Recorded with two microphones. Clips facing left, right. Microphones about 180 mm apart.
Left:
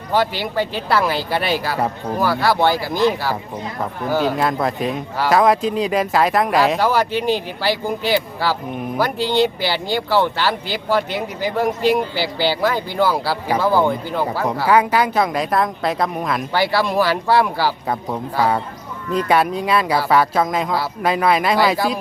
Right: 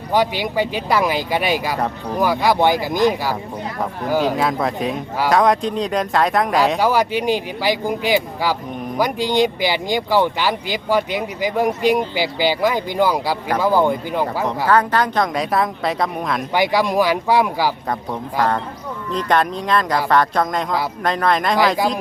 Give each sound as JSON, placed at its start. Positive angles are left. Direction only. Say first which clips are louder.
{"t": 0.1, "sound": "speech", "louder": "right 1 dB", "side_deg": -15}
{"t": 4.4, "sound": "a woman's voice", "louder": "even", "side_deg": 0}
{"t": 6.7, "sound": "speech", "louder": "right 1 dB", "side_deg": -10}
{"t": 14.4, "sound": "a woman's voice", "louder": "left 2 dB", "side_deg": 10}
{"t": 16.5, "sound": "speech", "louder": "right 2 dB", "side_deg": -15}
{"t": 17.8, "sound": "speech", "louder": "left 1 dB", "side_deg": 5}